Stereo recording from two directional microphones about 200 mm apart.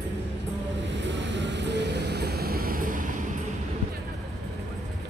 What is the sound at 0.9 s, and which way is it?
Vehicle, 65° right (ahead or behind).